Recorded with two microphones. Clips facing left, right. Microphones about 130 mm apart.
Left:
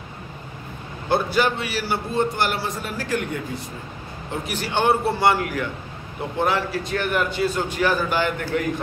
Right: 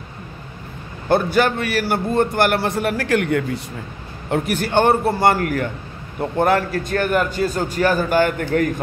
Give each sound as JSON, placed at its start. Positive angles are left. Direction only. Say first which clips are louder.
{"t": 1.0, "sound": "a man's voice", "louder": "right 4 dB", "side_deg": -50}
{"t": 4.3, "sound": "a man's voice", "louder": "right 7 dB", "side_deg": -50}